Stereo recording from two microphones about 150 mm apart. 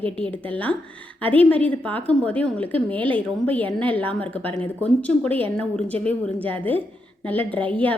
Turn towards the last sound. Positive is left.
turn(degrees=10)  # may be behind; listen again after turning